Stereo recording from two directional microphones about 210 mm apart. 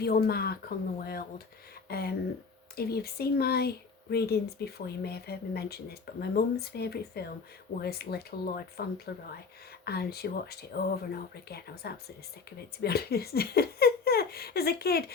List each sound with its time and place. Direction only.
0.0 s speech: 50° left (ahead or behind)